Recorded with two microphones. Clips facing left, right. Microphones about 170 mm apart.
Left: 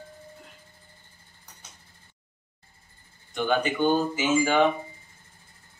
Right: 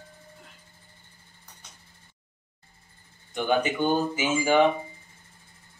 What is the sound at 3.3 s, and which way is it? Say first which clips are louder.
A man's voice: even; 10° right (ahead or behind).